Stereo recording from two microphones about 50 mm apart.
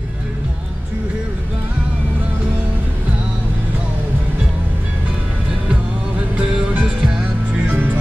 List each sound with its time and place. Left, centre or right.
6.3 s music: right